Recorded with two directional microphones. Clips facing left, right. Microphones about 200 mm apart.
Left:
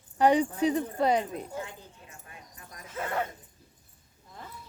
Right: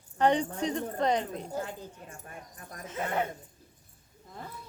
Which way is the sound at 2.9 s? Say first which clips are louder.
Right 1 dB; 20° right (ahead or behind).